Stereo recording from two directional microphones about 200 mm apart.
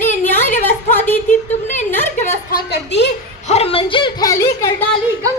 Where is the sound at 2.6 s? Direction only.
60° left (ahead or behind).